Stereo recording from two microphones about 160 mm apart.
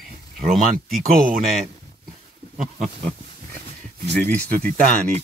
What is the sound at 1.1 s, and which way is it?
Speech, 60° right (ahead or behind).